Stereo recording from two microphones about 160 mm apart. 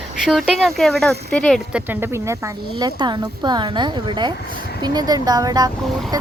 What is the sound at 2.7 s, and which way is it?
Speech, 25° right (ahead or behind).